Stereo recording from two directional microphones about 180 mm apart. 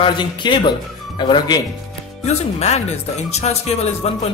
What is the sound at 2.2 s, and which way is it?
Speech, 35° left (ahead or behind).